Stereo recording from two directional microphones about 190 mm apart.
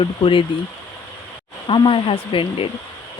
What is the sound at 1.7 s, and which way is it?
Speech, 25° left (ahead or behind).